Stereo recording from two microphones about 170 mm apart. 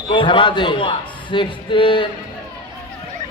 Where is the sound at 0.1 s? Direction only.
30° left (ahead or behind).